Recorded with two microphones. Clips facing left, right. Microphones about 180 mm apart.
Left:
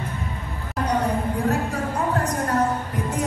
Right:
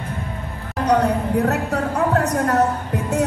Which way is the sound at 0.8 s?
70° right (ahead or behind).